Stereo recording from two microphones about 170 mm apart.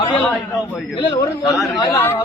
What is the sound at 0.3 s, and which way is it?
Speech, centre (ahead or behind).